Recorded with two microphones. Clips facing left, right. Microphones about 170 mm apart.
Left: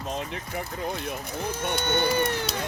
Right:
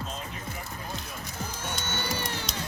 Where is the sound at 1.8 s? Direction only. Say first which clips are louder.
Left 10 dB; 60° left (ahead or behind).